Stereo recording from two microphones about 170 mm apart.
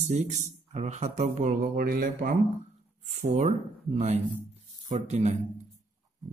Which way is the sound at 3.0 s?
40° right (ahead or behind).